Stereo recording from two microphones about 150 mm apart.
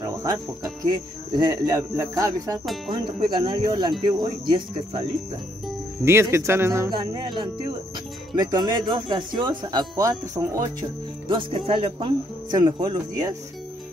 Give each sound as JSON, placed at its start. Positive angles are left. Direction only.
{"t": 0.0, "sound": "music", "side_deg": -20}
{"t": 0.8, "sound": "speech", "side_deg": -30}
{"t": 2.9, "sound": "speech", "side_deg": -30}
{"t": 6.0, "sound": "speech", "side_deg": -15}
{"t": 6.9, "sound": "speech", "side_deg": -30}
{"t": 8.4, "sound": "speech", "side_deg": -30}
{"t": 11.2, "sound": "speech", "side_deg": -40}